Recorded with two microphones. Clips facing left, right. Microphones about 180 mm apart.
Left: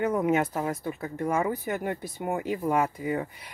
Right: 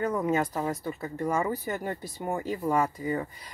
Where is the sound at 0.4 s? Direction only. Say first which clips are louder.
Left 1 dB; centre (ahead or behind).